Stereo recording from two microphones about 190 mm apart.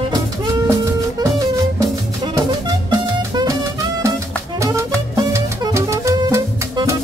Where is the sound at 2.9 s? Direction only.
20° right (ahead or behind).